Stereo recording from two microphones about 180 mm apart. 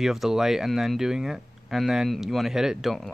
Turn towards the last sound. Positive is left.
turn(degrees=0)  # may be behind; listen again after turning